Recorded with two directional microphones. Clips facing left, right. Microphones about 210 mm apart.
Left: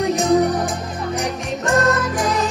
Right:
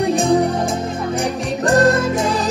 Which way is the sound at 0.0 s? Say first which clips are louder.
Right 1 dB; 30° right (ahead or behind).